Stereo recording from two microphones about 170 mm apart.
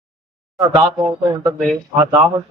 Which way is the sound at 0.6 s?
25° right (ahead or behind).